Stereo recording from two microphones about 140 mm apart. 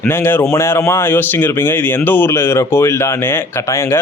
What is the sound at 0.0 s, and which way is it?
Speech, 15° left (ahead or behind).